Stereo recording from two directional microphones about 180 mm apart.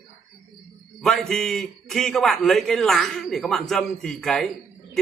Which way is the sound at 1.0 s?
Centre (ahead or behind).